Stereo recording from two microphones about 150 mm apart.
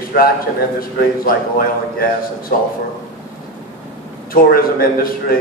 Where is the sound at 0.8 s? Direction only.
70° left (ahead or behind).